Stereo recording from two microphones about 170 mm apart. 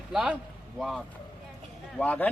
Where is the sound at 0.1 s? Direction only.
5° right (ahead or behind).